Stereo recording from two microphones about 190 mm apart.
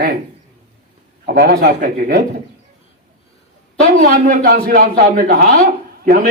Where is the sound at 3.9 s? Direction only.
45° right (ahead or behind).